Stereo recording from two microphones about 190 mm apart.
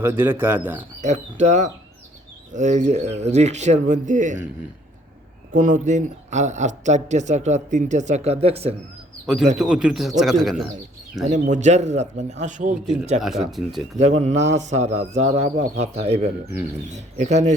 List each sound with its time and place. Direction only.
0.0 s speech: 10° right (ahead or behind)
1.0 s speech: 35° right (ahead or behind)
5.5 s speech: 40° right (ahead or behind)
9.2 s speech: centre (ahead or behind)
11.3 s speech: 40° right (ahead or behind)
12.8 s speech: 5° right (ahead or behind)
13.9 s speech: 35° right (ahead or behind)
15.5 s speech: 65° right (ahead or behind)
15.8 s speech: 35° right (ahead or behind)